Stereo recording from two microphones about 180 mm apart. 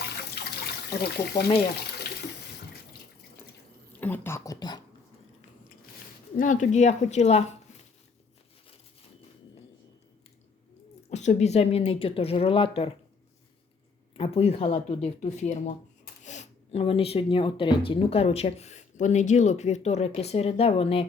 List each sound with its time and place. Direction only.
1.0 s speech: 65° left (ahead or behind)
4.0 s speech: 10° left (ahead or behind)
6.3 s speech: 45° left (ahead or behind)
11.1 s speech: 40° left (ahead or behind)
14.2 s speech: 35° left (ahead or behind)